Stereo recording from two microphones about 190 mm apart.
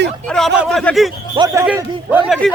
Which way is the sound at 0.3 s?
Centre (ahead or behind).